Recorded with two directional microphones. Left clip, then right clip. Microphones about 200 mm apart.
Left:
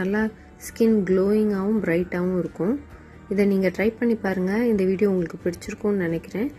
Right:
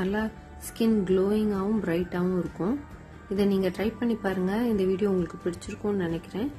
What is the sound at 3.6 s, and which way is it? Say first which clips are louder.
Speech: left 6 dB; 20° left (ahead or behind).